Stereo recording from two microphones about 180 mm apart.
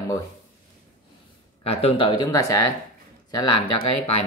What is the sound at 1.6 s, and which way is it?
Speech, 35° left (ahead or behind).